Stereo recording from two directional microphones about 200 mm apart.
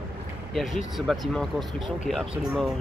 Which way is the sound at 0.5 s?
Centre (ahead or behind).